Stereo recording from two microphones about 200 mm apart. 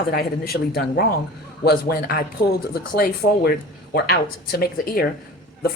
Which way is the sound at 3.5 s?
50° left (ahead or behind).